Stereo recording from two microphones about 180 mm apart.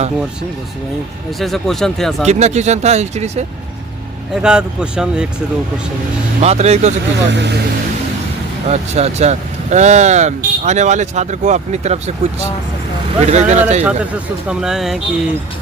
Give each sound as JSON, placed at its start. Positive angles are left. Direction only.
{"t": 1.4, "sound": "speech", "side_deg": 0}
{"t": 2.2, "sound": "speech", "side_deg": -40}
{"t": 4.4, "sound": "speech", "side_deg": -5}
{"t": 6.4, "sound": "speech", "side_deg": -35}
{"t": 7.3, "sound": "speech", "side_deg": -75}
{"t": 8.6, "sound": "speech", "side_deg": -40}
{"t": 13.1, "sound": "speech", "side_deg": -40}
{"t": 13.8, "sound": "speech", "side_deg": -5}